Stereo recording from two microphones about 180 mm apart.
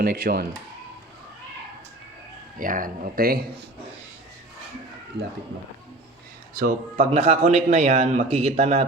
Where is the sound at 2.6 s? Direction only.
50° right (ahead or behind).